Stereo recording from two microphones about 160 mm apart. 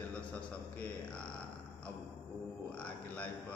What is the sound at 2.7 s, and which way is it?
Speech, 10° left (ahead or behind).